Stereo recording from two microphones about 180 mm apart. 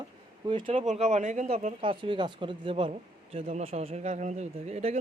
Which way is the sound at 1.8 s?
30° right (ahead or behind).